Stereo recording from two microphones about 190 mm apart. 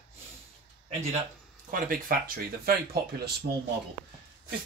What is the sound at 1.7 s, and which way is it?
Speech, 45° right (ahead or behind).